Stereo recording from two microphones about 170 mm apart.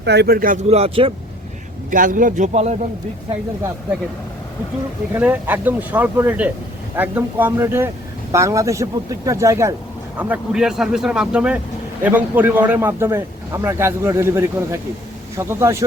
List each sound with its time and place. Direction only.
0.0 s speech: 80° right; by 0.6 s 55° right (ahead or behind)
0.7 s speech: 35° right (ahead or behind)
1.9 s a man's voice: 50° right (ahead or behind)
5.1 s a man's voice: 10° right (ahead or behind)